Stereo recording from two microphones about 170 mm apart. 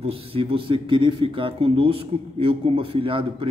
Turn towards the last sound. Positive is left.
turn(degrees=-30)  # may be behind; listen again after turning